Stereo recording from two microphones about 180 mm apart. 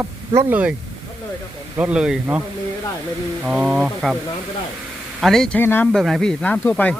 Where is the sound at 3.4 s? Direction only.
5° right (ahead or behind).